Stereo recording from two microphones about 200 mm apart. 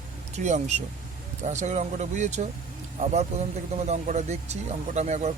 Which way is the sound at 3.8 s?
35° right (ahead or behind).